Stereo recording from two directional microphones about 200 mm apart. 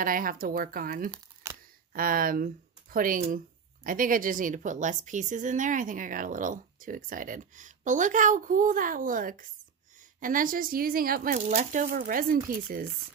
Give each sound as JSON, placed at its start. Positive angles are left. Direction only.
{"t": 0.0, "sound": "speech", "side_deg": -45}
{"t": 1.1, "sound": "a sound", "side_deg": -10}
{"t": 2.0, "sound": "a woman's voice", "side_deg": -45}